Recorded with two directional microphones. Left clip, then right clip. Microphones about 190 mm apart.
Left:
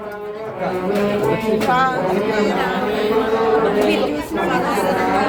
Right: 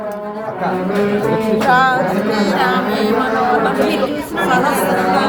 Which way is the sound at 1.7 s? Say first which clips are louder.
Right 5 dB; 30° right (ahead or behind).